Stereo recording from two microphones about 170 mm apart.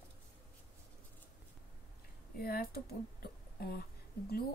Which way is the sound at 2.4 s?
60° left (ahead or behind).